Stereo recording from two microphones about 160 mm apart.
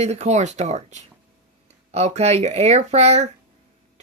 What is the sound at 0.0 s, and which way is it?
Speech, 45° right (ahead or behind).